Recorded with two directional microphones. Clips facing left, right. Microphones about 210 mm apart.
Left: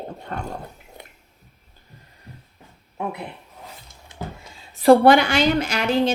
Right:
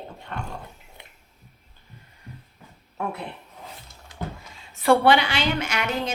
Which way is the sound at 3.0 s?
20° left (ahead or behind).